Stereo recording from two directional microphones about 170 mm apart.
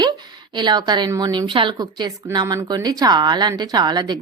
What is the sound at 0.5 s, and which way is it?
A woman's voice, 25° right (ahead or behind).